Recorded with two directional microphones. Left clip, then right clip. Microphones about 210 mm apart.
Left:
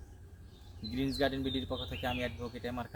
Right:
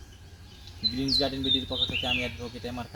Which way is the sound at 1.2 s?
Centre (ahead or behind).